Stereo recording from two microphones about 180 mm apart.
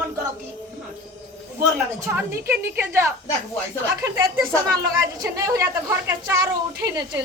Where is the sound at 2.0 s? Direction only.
10° right (ahead or behind).